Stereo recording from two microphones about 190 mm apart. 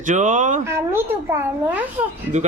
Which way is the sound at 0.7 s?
15° right (ahead or behind).